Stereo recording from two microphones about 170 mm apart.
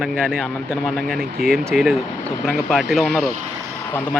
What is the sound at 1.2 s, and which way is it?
Speech, 60° right (ahead or behind).